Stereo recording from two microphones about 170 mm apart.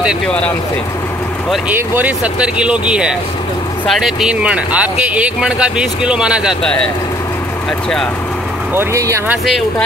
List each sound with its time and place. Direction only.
1.7 s speech: 10° right (ahead or behind)
8.7 s speech: 15° right (ahead or behind)